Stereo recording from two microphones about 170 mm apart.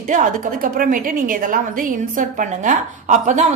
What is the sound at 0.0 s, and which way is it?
A woman's voice, 50° right (ahead or behind).